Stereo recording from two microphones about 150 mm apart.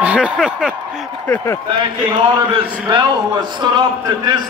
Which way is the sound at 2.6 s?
30° right (ahead or behind).